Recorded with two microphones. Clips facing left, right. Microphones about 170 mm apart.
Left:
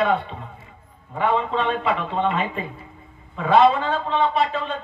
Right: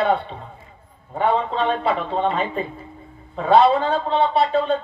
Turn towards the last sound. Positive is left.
turn(degrees=-35)  # may be behind; listen again after turning